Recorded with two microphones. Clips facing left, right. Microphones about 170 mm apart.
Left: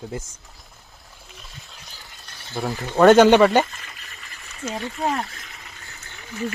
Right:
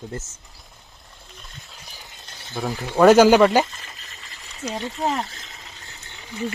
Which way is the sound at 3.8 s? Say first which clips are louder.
Even; 30° right (ahead or behind).